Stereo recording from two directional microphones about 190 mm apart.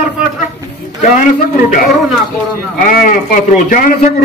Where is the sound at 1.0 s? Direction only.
45° left (ahead or behind).